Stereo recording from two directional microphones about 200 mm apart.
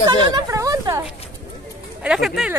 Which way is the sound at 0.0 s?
20° right (ahead or behind).